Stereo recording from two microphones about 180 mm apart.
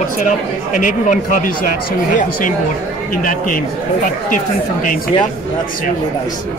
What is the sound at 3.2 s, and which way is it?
Speech, 50° left (ahead or behind).